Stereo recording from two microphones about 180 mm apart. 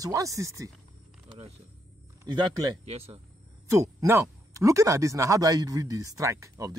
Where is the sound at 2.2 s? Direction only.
20° right (ahead or behind).